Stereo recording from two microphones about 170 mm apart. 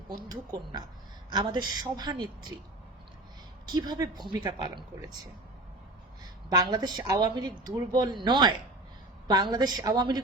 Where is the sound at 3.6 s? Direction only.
25° right (ahead or behind).